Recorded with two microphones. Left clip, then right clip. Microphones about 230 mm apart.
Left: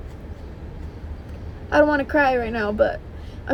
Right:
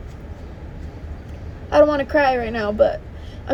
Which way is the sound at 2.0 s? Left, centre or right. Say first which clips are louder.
Right 2 dB; centre.